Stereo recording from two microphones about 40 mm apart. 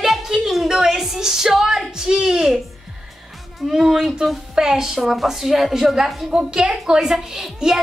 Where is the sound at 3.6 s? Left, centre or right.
Centre.